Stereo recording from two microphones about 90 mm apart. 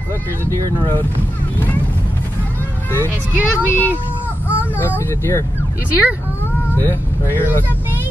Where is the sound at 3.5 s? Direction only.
25° left (ahead or behind).